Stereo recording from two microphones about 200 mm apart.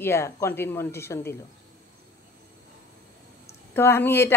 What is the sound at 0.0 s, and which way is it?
A woman's voice, 10° left (ahead or behind).